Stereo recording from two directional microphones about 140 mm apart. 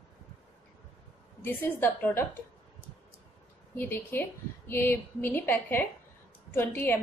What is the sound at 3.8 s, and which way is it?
A woman's voice, 15° left (ahead or behind).